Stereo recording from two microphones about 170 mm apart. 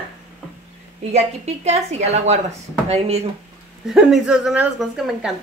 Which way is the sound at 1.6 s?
40° right (ahead or behind).